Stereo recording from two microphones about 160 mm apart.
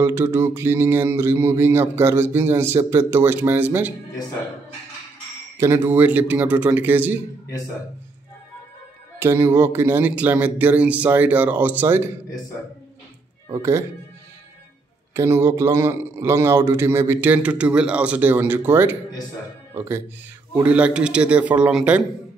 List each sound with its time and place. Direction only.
0.0 s mantra: 15° right (ahead or behind)
5.6 s mantra: 15° right (ahead or behind)
9.2 s mantra: 15° right (ahead or behind)
13.5 s speech: 20° right (ahead or behind)
15.1 s mantra: 15° right (ahead or behind)
20.5 s mantra: 10° right (ahead or behind)